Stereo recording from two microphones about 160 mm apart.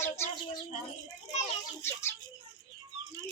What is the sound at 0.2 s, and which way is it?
Speech, 15° left (ahead or behind).